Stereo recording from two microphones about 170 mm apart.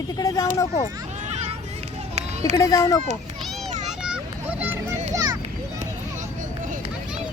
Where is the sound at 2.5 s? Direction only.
20° left (ahead or behind).